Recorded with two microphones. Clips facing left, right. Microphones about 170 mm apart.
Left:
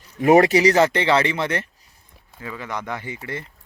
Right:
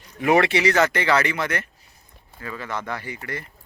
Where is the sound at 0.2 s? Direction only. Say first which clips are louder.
Left 5 dB; 40° left (ahead or behind).